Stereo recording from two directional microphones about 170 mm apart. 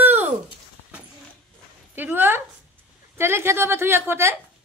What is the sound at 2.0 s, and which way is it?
A woman's voice, 10° right (ahead or behind).